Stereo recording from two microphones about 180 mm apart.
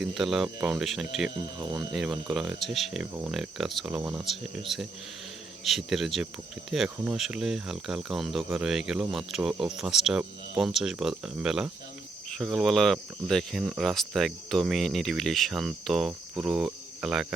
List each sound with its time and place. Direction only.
0.0 s speech: centre (ahead or behind)
1.5 s speech: 25° right (ahead or behind)
1.8 s speech: centre (ahead or behind)